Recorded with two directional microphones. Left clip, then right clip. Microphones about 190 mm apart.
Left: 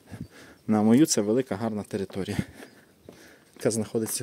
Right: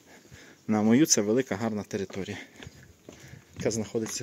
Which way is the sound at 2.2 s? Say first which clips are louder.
Left 4 dB; 30° left (ahead or behind).